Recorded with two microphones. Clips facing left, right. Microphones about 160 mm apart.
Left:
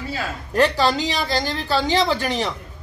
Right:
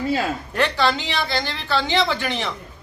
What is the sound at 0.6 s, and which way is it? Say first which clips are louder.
A man's voice: left 3 dB; 40° left (ahead or behind).